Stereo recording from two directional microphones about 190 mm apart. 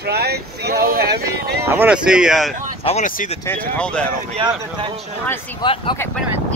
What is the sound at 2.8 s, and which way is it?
Speech, 40° left (ahead or behind).